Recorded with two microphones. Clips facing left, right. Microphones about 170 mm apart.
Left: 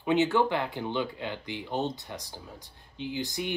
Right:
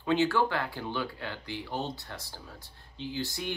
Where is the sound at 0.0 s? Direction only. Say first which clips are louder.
Left 2 dB; 20° left (ahead or behind).